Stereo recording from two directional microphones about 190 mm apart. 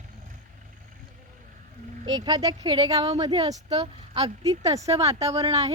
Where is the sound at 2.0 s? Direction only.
20° right (ahead or behind).